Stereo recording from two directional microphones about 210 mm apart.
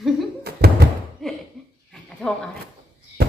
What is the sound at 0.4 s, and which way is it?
Thunk, 50° right (ahead or behind).